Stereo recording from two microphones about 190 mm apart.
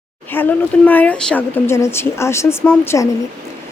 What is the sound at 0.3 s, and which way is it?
A woman's voice, 10° left (ahead or behind).